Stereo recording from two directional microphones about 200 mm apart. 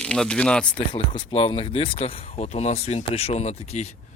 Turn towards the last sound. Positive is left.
turn(degrees=30)  # may be behind; listen again after turning